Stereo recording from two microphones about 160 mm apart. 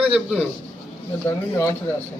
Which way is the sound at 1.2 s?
15° left (ahead or behind).